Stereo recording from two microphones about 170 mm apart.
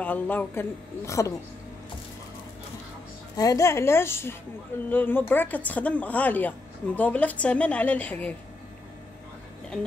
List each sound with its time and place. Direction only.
0.0 s a woman's voice: 10° left (ahead or behind)
3.3 s a woman's voice: 20° left (ahead or behind)